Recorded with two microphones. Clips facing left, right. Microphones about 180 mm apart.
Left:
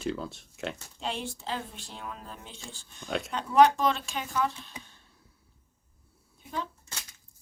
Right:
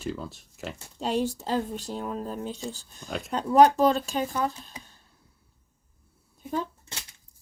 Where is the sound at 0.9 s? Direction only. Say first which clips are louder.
Right 8 dB; 40° right (ahead or behind).